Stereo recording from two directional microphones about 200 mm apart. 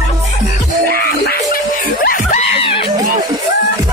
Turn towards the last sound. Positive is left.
turn(degrees=30)  # may be behind; listen again after turning